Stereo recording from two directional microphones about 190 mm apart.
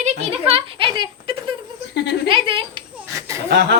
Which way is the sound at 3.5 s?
60° right (ahead or behind).